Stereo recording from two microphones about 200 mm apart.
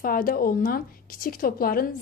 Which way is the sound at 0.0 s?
45° left (ahead or behind).